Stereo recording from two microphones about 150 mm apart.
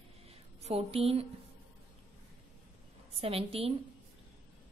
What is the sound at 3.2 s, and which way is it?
Speech, 40° right (ahead or behind).